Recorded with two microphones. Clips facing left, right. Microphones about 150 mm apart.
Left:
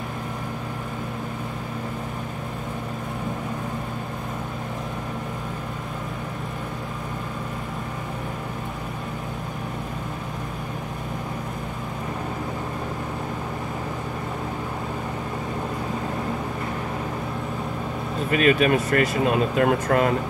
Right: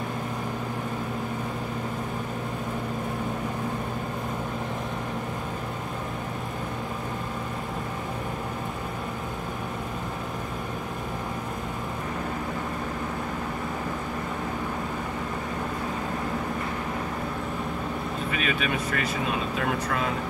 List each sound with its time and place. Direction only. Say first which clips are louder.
18.3 s speech: left 11 dB; 45° left (ahead or behind)